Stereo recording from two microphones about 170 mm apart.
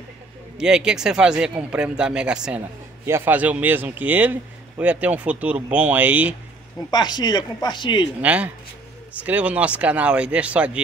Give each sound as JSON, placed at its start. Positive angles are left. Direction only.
{"t": 0.6, "sound": "speech", "side_deg": -5}
{"t": 6.9, "sound": "speech", "side_deg": 25}
{"t": 8.2, "sound": "speech", "side_deg": -10}